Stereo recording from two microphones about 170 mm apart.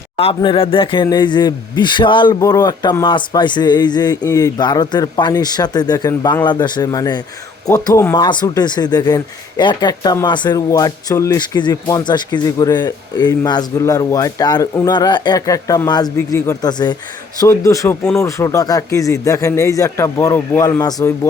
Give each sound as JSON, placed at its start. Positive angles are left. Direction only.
{"t": 0.2, "sound": "speech", "side_deg": 35}